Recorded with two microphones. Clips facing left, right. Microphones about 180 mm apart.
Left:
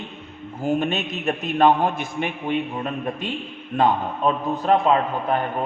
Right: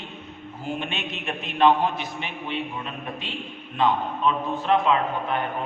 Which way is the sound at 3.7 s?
45° left (ahead or behind).